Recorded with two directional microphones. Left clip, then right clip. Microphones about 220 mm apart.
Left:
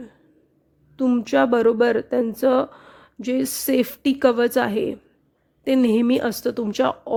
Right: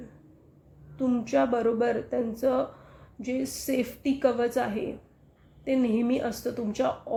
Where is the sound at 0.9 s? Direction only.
45° left (ahead or behind).